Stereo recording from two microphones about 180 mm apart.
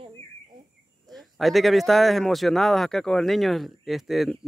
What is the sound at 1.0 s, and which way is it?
A man's voice, centre (ahead or behind).